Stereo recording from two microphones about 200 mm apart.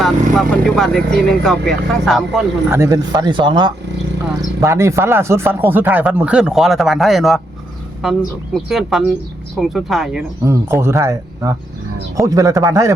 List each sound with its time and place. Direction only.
0.0 s speech: centre (ahead or behind)
2.6 s speech: 15° right (ahead or behind)
10.4 s speech: 15° right (ahead or behind)